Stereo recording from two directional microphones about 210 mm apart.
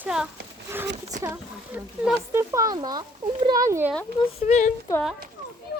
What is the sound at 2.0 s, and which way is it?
Speech, 10° right (ahead or behind).